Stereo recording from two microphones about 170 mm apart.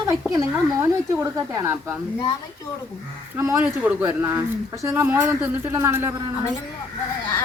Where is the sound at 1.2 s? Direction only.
20° right (ahead or behind).